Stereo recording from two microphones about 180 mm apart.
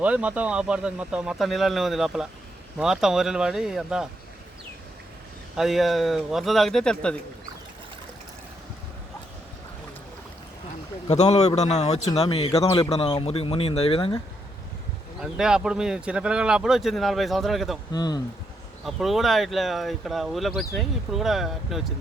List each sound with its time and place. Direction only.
0.0 s speech: 5° right (ahead or behind)
5.5 s speech: centre (ahead or behind)
11.1 s a man's voice: 40° left (ahead or behind)
15.2 s speech: 5° right (ahead or behind)
17.9 s speech: 20° left (ahead or behind)
18.9 s speech: centre (ahead or behind)